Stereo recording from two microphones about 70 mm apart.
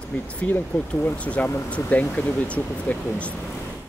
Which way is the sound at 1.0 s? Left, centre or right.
Left.